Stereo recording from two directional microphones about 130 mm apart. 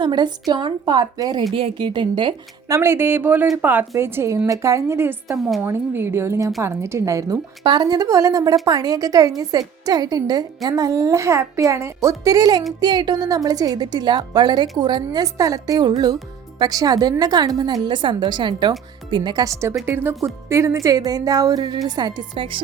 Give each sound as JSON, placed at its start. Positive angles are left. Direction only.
{"t": 0.0, "sound": "a woman's voice", "side_deg": -35}
{"t": 1.5, "sound": "a woman's voice", "side_deg": -40}
{"t": 2.6, "sound": "a woman's voice", "side_deg": -20}
{"t": 5.4, "sound": "a woman's voice", "side_deg": 0}
{"t": 5.6, "sound": "a woman's voice", "side_deg": -15}
{"t": 19.8, "sound": "a woman's voice", "side_deg": -15}